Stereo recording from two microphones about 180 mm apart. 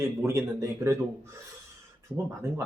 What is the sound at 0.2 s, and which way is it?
A man's voice, 15° right (ahead or behind).